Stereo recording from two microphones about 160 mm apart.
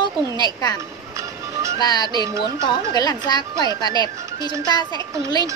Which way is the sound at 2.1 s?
30° right (ahead or behind).